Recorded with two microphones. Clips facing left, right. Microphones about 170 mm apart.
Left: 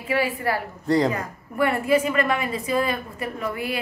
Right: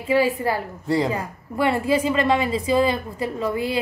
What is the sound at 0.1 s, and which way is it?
Speech, 25° right (ahead or behind).